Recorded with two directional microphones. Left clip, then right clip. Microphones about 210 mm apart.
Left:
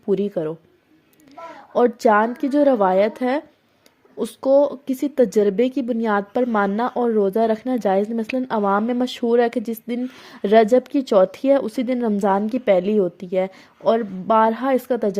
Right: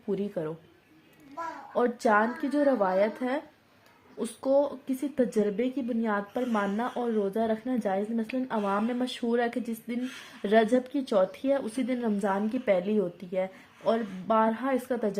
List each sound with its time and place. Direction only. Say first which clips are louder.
0.1 s speech: left 10 dB; 35° left (ahead or behind)
1.7 s speech: left 9 dB; 35° left (ahead or behind)